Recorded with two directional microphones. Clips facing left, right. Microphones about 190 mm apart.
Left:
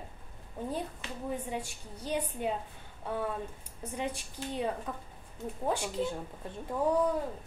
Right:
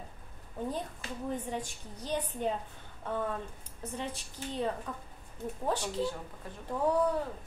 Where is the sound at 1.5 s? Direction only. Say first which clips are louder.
Even; 10° left (ahead or behind).